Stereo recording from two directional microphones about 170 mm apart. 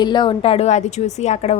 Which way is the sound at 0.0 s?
25° left (ahead or behind).